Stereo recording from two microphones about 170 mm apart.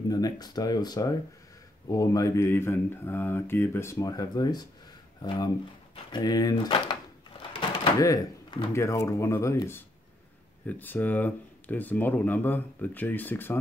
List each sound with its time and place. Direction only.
0.1 s speech: 20° left (ahead or behind)